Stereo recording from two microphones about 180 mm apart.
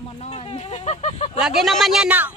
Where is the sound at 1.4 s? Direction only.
Centre (ahead or behind).